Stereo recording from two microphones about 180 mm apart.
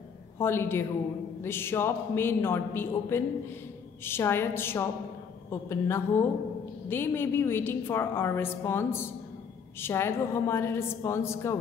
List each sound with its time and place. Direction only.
0.4 s a woman's voice: 15° left (ahead or behind)